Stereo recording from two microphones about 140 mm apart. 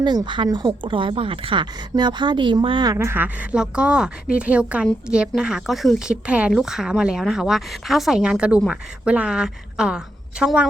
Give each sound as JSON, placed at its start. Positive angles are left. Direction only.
{"t": 0.0, "sound": "speech", "side_deg": -30}
{"t": 3.5, "sound": "a woman's voice", "side_deg": -5}